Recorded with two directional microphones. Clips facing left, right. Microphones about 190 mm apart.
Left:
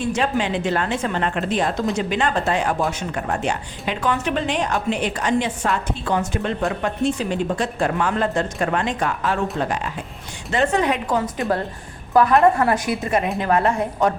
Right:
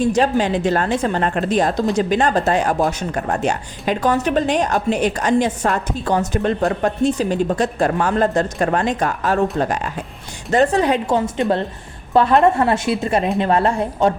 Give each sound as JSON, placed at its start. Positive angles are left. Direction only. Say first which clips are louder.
{"t": 0.0, "sound": "a woman's voice", "louder": "right 5 dB", "side_deg": -40}